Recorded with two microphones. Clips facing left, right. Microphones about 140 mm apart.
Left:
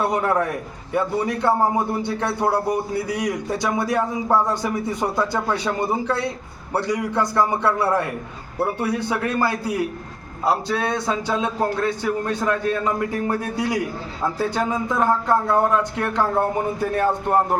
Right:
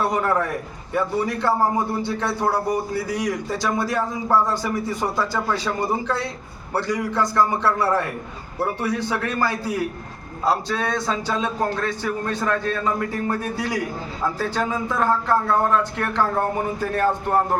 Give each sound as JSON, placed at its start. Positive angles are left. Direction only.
{"t": 0.1, "sound": "a man's voice", "side_deg": 15}
{"t": 6.7, "sound": "a man's voice", "side_deg": 15}